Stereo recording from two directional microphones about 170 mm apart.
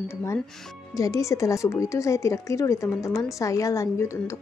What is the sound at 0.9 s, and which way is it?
A woman's voice, 20° left (ahead or behind).